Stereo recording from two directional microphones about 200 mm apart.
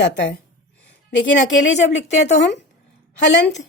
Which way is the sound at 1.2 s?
65° left (ahead or behind).